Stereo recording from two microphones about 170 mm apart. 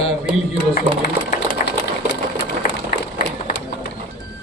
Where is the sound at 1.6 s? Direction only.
50° left (ahead or behind).